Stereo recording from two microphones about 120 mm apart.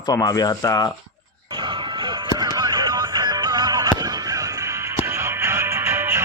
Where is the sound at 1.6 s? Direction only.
40° right (ahead or behind); by 6.2 s 20° right (ahead or behind).